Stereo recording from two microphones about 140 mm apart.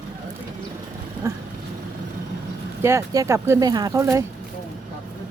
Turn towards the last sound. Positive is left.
turn(degrees=-20)  # may be behind; listen again after turning